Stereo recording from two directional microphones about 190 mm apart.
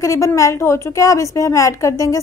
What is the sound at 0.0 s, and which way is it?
A woman's voice, 15° left (ahead or behind).